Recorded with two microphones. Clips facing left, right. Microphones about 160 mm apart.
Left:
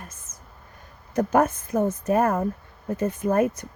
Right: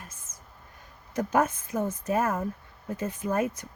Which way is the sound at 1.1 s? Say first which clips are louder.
Left 5 dB; 50° left (ahead or behind).